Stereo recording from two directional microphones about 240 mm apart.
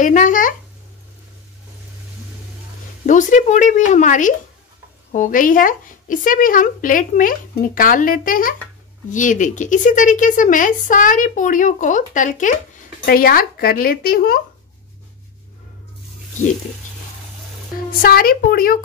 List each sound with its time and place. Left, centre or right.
0.0 s speech: left
3.1 s speech: left
18.0 s speech: left